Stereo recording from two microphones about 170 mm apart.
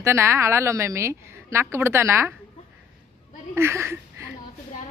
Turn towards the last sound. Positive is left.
turn(degrees=-15)  # may be behind; listen again after turning